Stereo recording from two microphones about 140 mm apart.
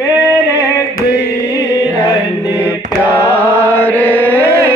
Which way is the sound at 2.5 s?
15° right (ahead or behind).